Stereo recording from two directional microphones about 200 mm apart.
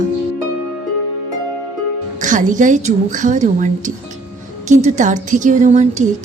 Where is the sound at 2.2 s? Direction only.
40° right (ahead or behind).